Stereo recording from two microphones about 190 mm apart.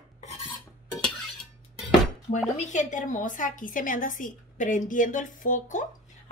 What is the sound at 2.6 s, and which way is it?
A woman's voice, 40° left (ahead or behind).